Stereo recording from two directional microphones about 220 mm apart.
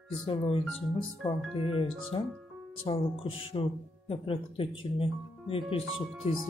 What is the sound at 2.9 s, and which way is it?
Speech, 25° left (ahead or behind).